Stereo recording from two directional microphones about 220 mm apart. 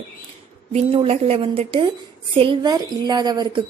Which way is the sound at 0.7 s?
25° right (ahead or behind).